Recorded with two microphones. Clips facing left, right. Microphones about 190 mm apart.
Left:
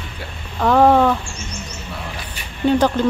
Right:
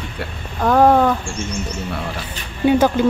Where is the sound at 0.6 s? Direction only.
5° right (ahead or behind).